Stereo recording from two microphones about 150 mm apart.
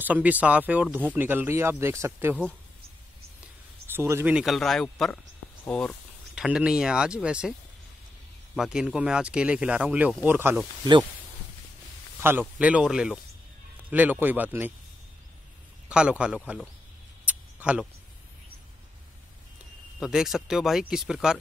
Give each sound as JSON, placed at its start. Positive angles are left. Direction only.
{"t": 0.0, "sound": "speech", "side_deg": -10}
{"t": 3.8, "sound": "speech", "side_deg": -15}
{"t": 6.3, "sound": "speech", "side_deg": -5}
{"t": 8.5, "sound": "speech", "side_deg": -5}
{"t": 12.2, "sound": "a man's voice", "side_deg": -15}
{"t": 15.9, "sound": "speech", "side_deg": -5}
{"t": 17.2, "sound": "a sound", "side_deg": -10}
{"t": 20.0, "sound": "speech", "side_deg": -5}